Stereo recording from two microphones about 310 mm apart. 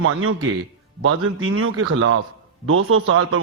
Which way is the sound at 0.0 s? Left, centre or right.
Right.